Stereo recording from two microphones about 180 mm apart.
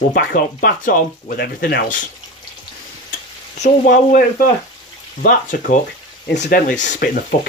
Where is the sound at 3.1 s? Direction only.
45° left (ahead or behind).